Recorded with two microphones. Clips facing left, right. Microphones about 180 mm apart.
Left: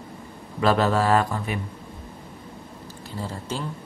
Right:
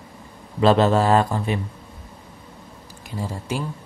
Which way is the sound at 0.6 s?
25° right (ahead or behind).